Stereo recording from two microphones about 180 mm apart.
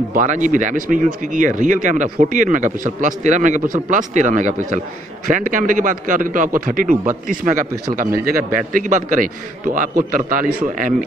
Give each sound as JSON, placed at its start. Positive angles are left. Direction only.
{"t": 0.1, "sound": "a man's voice", "side_deg": -45}